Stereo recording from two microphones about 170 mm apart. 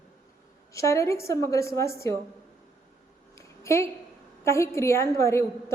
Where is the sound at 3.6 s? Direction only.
15° left (ahead or behind).